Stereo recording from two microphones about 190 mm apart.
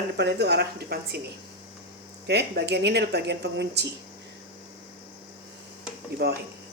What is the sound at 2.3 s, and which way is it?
Speech, 60° right (ahead or behind).